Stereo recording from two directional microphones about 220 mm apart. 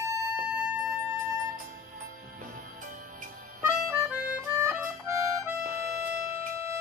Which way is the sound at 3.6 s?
10° right (ahead or behind).